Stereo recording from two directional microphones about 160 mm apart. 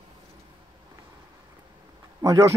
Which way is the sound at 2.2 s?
20° right (ahead or behind).